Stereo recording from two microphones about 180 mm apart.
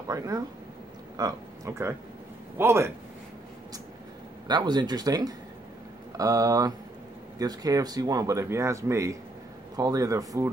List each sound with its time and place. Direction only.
0.1 s a man's voice: 20° right (ahead or behind)
4.5 s speech: 25° right (ahead or behind)